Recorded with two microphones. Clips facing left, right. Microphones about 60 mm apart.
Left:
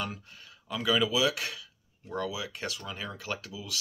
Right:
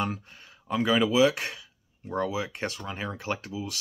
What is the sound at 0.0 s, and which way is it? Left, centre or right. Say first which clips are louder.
Speech: right 6 dB; right.